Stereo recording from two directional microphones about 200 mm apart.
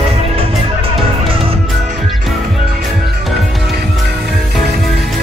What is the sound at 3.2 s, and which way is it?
Music, centre (ahead or behind).